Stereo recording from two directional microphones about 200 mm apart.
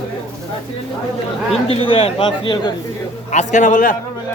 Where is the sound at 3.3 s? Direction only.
40° left (ahead or behind).